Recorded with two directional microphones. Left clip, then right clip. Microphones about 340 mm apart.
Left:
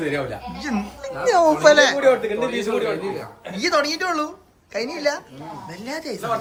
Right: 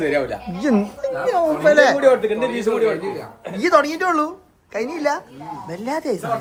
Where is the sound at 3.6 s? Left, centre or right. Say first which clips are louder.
Right 4 dB; centre.